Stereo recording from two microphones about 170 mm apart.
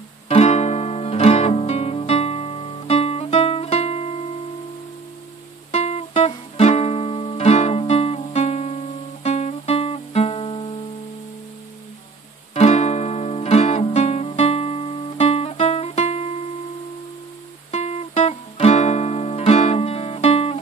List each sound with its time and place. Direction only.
0.3 s music: 40° left (ahead or behind)
5.7 s music: 40° left (ahead or behind)
12.5 s music: 40° left (ahead or behind)
17.6 s music: 40° left (ahead or behind)